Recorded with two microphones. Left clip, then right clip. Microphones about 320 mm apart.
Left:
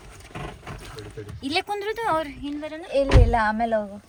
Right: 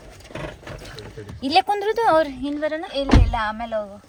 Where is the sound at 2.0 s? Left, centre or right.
Right.